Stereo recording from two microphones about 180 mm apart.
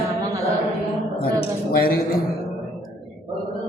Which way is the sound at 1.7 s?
55° left (ahead or behind).